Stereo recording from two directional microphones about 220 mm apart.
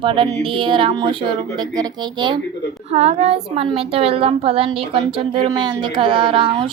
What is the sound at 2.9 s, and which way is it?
A woman's voice, 30° right (ahead or behind).